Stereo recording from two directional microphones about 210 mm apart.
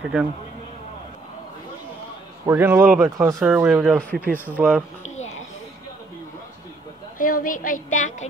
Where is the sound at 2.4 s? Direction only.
10° right (ahead or behind).